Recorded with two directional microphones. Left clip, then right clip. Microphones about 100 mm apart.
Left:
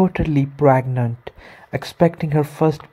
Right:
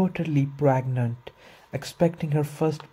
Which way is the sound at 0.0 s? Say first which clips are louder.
Left 8 dB; 35° left (ahead or behind).